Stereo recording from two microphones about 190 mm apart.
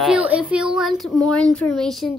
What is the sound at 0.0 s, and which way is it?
A woman's voice, 5° right (ahead or behind).